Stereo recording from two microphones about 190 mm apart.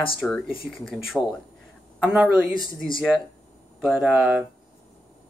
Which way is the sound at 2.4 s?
20° right (ahead or behind).